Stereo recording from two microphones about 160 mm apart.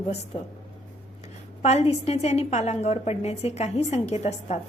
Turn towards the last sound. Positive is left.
turn(degrees=45)  # may be behind; listen again after turning